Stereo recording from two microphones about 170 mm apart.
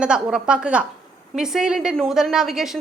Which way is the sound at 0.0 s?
5° right (ahead or behind).